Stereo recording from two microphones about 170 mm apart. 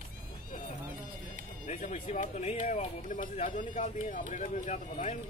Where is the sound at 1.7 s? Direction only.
45° left (ahead or behind).